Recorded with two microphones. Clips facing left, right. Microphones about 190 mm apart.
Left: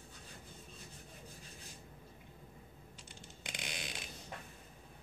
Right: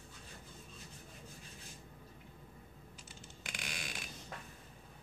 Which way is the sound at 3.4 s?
20° left (ahead or behind).